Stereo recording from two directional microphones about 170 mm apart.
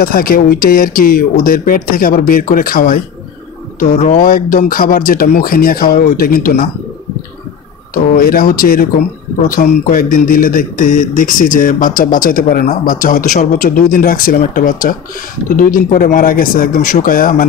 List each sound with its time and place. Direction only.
0.0 s speech: 60° left (ahead or behind)
4.0 s speech: 50° left (ahead or behind)
7.9 s speech: 55° left (ahead or behind)